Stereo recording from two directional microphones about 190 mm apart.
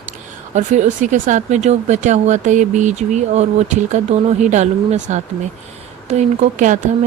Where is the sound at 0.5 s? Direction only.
40° right (ahead or behind).